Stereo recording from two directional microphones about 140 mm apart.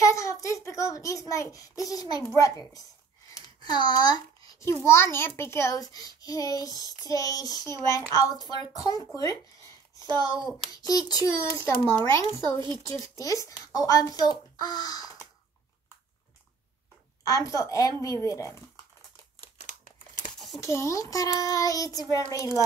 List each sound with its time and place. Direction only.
0.0 s a child's voice: 25° left (ahead or behind)
10.7 s a child's voice: 25° left (ahead or behind)
17.3 s a child's voice: 25° left (ahead or behind)
20.3 s a sound: centre (ahead or behind)
20.6 s a child's voice: 20° left (ahead or behind)